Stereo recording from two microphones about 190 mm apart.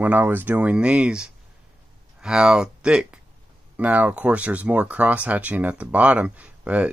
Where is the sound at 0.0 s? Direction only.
10° right (ahead or behind).